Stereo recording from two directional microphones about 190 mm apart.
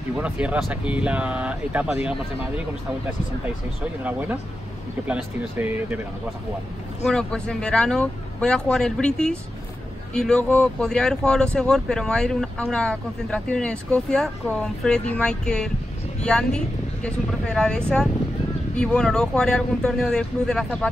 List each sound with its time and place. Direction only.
0.2 s speech: 5° right (ahead or behind)
5.0 s speech: 5° right (ahead or behind)
7.1 s speech: 5° left (ahead or behind)